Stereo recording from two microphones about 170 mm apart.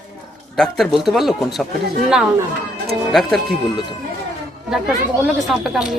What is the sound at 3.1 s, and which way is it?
Speech, centre (ahead or behind).